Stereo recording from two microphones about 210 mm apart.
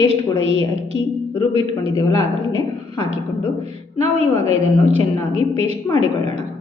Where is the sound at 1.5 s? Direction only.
25° right (ahead or behind).